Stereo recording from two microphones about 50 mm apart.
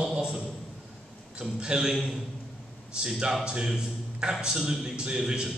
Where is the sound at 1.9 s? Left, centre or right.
Centre.